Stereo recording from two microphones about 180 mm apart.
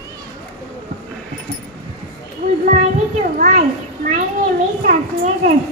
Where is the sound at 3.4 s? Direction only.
45° right (ahead or behind).